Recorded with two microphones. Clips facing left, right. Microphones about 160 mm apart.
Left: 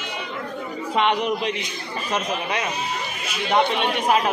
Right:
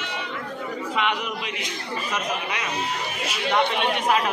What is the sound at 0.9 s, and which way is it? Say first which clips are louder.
A man's voice: left 7 dB; 35° left (ahead or behind).